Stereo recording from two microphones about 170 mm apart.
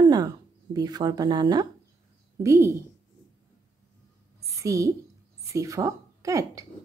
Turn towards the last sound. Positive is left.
turn(degrees=-20)  # may be behind; listen again after turning